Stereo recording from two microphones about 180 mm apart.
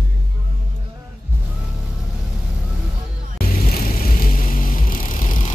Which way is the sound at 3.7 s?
50° left (ahead or behind).